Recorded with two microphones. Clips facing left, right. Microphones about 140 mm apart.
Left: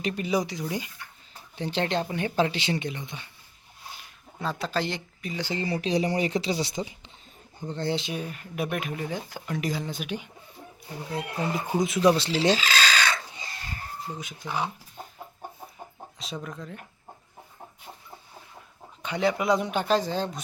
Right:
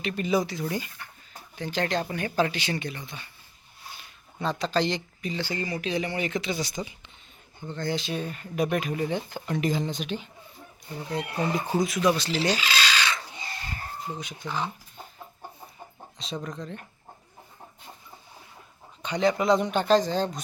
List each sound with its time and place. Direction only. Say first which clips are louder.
0.1 s speech: right 2 dB; 15° left (ahead or behind)
1.5 s speech: left 1 dB; 30° left (ahead or behind)
4.4 s speech: right 3 dB; 5° left (ahead or behind)
5.4 s speech: left 2 dB; 20° left (ahead or behind)
5.6 s speech: left 6 dB; 35° left (ahead or behind)
8.1 s speech: right 2 dB; 5° left (ahead or behind)
11.8 s speech: even; 25° left (ahead or behind)
12.6 s a sound: left 2 dB; 45° left (ahead or behind)
14.2 s chicken: left 2 dB; 5° left (ahead or behind)
16.1 s speech: right 2 dB; 5° left (ahead or behind)
19.0 s speech: right 2 dB; 5° left (ahead or behind)